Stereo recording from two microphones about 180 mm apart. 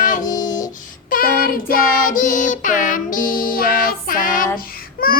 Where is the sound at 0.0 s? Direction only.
45° left (ahead or behind).